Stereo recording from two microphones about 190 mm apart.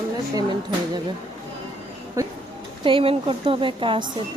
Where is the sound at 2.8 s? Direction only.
30° right (ahead or behind).